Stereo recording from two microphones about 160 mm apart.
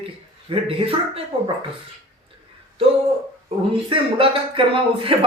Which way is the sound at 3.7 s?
35° right (ahead or behind).